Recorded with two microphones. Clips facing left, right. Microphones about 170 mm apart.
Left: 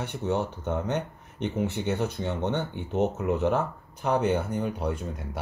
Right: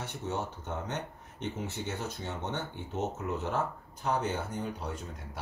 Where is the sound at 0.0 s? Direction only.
65° left (ahead or behind).